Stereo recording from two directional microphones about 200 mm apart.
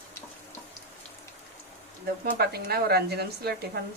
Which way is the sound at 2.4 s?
50° right (ahead or behind).